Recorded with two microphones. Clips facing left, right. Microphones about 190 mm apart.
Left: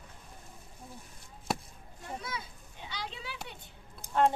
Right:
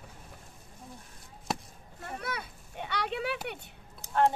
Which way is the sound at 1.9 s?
65° right (ahead or behind).